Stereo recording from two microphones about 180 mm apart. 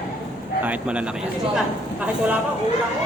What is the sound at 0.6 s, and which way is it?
A man's voice, 5° right (ahead or behind).